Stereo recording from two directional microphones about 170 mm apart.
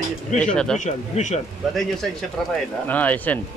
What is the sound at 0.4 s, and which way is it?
Speech, 5° left (ahead or behind).